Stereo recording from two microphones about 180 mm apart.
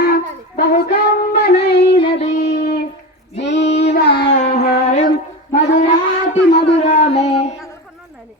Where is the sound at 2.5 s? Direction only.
60° left (ahead or behind).